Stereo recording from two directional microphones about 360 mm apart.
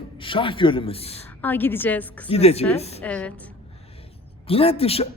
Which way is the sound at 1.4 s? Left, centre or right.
Centre.